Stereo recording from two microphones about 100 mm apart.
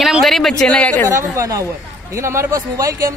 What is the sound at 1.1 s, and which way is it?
Speech, 30° right (ahead or behind).